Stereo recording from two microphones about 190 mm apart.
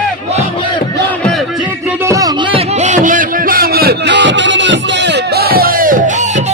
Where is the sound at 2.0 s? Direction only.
20° right (ahead or behind); by 6.4 s 40° right (ahead or behind).